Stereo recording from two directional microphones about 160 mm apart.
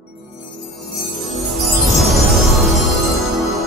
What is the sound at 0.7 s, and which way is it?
Music, centre (ahead or behind).